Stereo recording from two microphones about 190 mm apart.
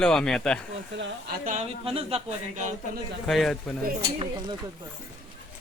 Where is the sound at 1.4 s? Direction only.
40° right (ahead or behind).